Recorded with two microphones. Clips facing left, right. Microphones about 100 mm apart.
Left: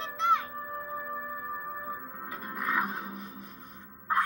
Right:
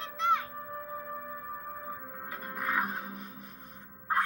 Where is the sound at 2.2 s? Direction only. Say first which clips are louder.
Left 1 dB; 20° left (ahead or behind).